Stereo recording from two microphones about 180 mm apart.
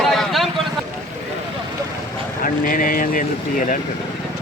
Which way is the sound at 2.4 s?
50° left (ahead or behind).